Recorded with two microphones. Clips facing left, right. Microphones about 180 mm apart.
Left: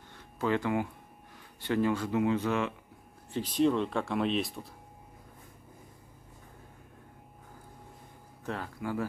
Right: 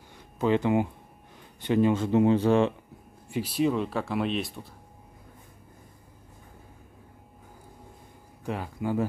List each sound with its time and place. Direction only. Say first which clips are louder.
0.4 s speech: right 5 dB; 20° right (ahead or behind)
3.3 s speech: right 1 dB; 10° right (ahead or behind)
8.5 s speech: right 5 dB; 15° right (ahead or behind)